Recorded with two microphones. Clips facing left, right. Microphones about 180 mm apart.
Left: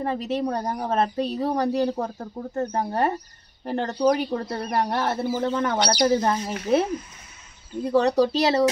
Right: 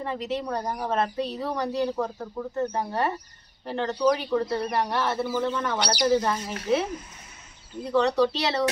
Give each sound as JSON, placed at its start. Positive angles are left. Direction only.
{"t": 0.0, "sound": "speech", "side_deg": 45}
{"t": 7.9, "sound": "speech", "side_deg": 40}